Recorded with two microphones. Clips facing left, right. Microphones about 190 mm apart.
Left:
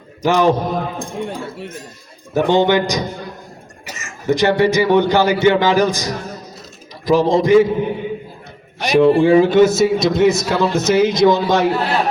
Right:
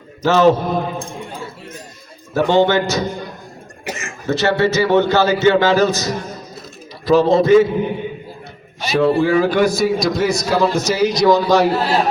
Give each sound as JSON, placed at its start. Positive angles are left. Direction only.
{"t": 0.2, "sound": "a man's voice", "side_deg": 15}
{"t": 2.3, "sound": "a man's voice", "side_deg": 15}
{"t": 3.8, "sound": "a sound", "side_deg": -55}
{"t": 4.3, "sound": "a man's voice", "side_deg": 15}
{"t": 8.9, "sound": "a man's voice", "side_deg": 20}